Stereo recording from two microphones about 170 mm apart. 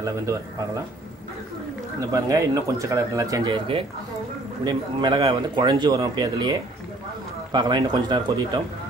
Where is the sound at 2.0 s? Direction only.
20° right (ahead or behind).